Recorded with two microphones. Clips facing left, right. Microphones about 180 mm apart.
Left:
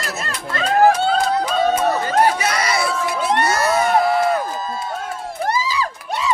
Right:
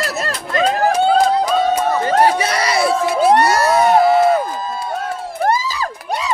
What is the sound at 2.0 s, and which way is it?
Crowd, 30° right (ahead or behind).